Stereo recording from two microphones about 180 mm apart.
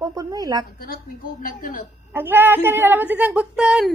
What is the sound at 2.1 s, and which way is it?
Speech, 10° right (ahead or behind).